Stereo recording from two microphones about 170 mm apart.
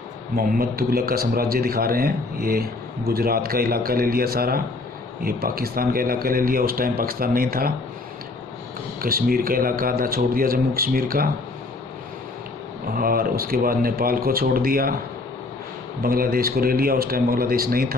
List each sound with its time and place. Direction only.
0.4 s speech: 55° right (ahead or behind)
9.0 s speech: 60° right (ahead or behind)
12.9 s speech: 60° right (ahead or behind)
16.0 s speech: 60° right (ahead or behind)